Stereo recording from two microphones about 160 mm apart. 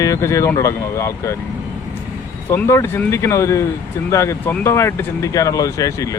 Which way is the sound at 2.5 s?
15° left (ahead or behind).